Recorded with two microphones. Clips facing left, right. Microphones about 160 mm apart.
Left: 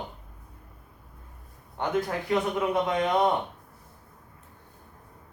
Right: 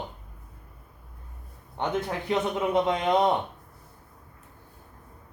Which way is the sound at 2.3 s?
25° right (ahead or behind).